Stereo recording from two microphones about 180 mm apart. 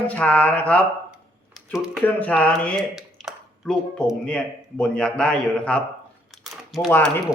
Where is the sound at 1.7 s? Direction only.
5° right (ahead or behind).